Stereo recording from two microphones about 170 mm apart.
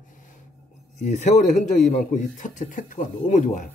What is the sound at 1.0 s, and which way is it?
A man's voice, 45° left (ahead or behind).